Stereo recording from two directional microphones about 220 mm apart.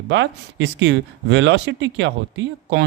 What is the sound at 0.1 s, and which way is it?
Speech, 55° right (ahead or behind).